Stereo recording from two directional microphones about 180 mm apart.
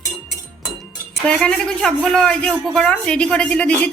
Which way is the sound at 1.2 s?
5° left (ahead or behind).